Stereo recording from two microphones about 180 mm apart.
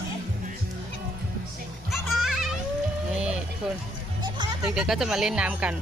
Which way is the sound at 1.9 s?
Centre (ahead or behind).